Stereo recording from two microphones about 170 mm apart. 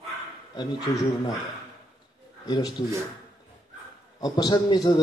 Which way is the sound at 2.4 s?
25° left (ahead or behind).